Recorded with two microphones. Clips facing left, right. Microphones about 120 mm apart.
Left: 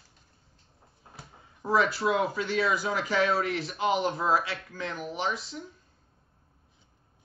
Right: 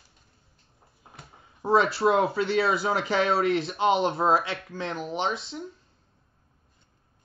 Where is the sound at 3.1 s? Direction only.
30° right (ahead or behind).